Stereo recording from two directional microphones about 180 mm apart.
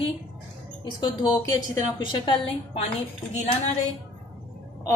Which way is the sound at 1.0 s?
25° left (ahead or behind).